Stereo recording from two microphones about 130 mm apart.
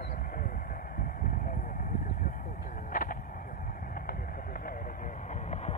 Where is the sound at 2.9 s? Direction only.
90° left.